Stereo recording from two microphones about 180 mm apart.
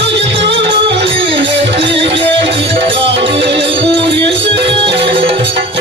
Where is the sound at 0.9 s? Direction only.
70° right (ahead or behind).